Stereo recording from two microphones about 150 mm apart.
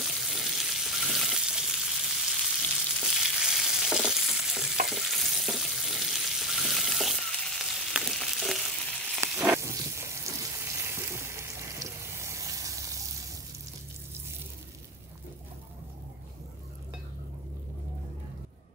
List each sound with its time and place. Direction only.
0.0 s frying: centre (ahead or behind)
9.6 s a sound: 20° right (ahead or behind)
10.6 s water: 15° right (ahead or behind)